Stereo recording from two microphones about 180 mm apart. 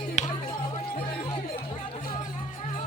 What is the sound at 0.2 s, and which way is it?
Music, 40° left (ahead or behind).